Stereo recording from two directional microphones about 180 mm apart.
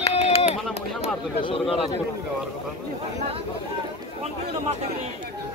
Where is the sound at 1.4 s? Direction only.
30° left (ahead or behind).